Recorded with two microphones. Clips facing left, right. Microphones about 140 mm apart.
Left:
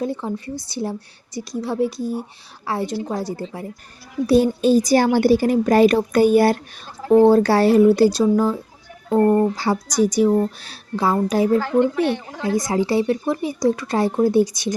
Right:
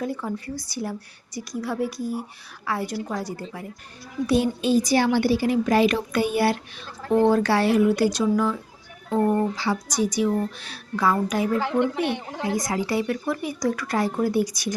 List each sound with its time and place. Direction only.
0.0 s a woman's voice: 25° left (ahead or behind)
4.3 s a woman's voice: 40° left (ahead or behind)
9.6 s speech: 40° left (ahead or behind)
10.4 s a woman's voice: 30° left (ahead or behind)
11.6 s a woman's voice: 20° right (ahead or behind)
12.5 s a woman's voice: 25° left (ahead or behind)